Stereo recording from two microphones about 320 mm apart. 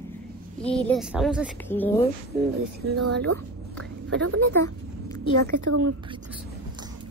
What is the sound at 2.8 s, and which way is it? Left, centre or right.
A woman's voice, right.